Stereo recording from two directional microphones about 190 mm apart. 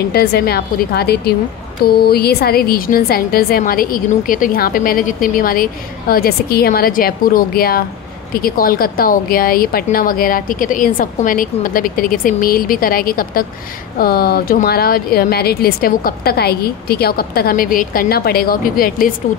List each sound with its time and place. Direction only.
0.1 s a woman's voice: 55° left (ahead or behind)